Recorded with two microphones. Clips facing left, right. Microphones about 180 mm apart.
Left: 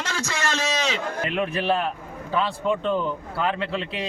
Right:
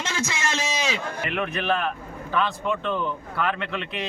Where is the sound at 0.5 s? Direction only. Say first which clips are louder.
Left 2 dB; 10° right (ahead or behind).